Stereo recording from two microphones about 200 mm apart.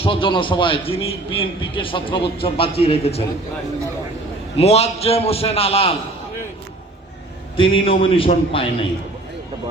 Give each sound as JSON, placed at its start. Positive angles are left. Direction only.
{"t": 0.0, "sound": "a man's voice", "side_deg": 25}
{"t": 4.5, "sound": "a man's voice", "side_deg": 30}
{"t": 7.5, "sound": "a man's voice", "side_deg": 25}